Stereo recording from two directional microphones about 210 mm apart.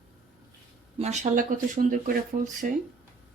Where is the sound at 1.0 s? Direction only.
35° right (ahead or behind).